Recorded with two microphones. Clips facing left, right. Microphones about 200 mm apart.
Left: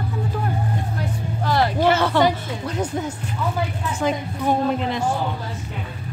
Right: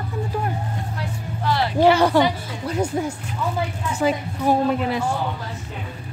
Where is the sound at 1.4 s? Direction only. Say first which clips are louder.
Left 2 dB; 45° left (ahead or behind).